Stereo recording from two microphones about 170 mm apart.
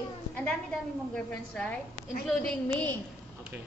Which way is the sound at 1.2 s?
5° left (ahead or behind).